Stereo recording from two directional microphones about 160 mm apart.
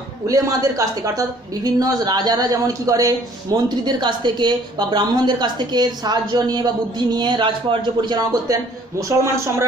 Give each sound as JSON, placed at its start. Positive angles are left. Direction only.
{"t": 0.3, "sound": "a woman's voice", "side_deg": -20}